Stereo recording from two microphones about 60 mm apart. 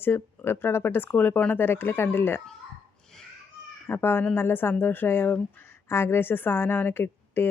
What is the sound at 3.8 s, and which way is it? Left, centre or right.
Speech, left.